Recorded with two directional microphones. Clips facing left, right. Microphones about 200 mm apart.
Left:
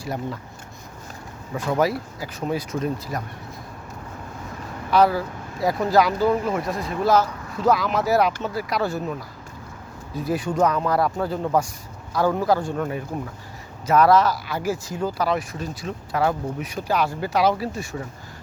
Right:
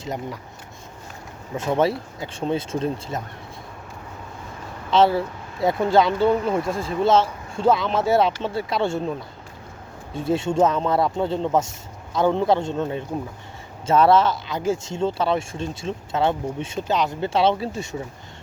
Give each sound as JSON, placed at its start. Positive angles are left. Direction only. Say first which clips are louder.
{"t": 0.0, "sound": "speech", "louder": "left 1 dB", "side_deg": -20}
{"t": 1.5, "sound": "speech", "louder": "right 1 dB", "side_deg": -25}
{"t": 4.9, "sound": "speech", "louder": "right 1 dB", "side_deg": -25}
{"t": 10.2, "sound": "speech", "louder": "right 2 dB", "side_deg": -25}